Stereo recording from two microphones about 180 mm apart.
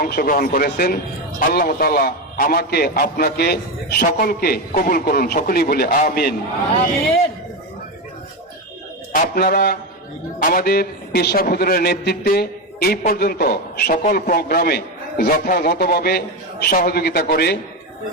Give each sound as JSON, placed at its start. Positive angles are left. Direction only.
{"t": 0.0, "sound": "a man's voice", "side_deg": 55}
{"t": 9.1, "sound": "a man's voice", "side_deg": 55}